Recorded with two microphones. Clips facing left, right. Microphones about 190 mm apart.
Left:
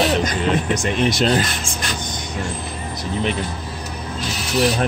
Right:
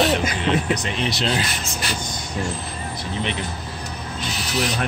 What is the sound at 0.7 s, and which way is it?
Speech, 50° left (ahead or behind).